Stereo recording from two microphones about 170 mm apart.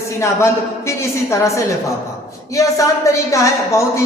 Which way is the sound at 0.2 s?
15° left (ahead or behind).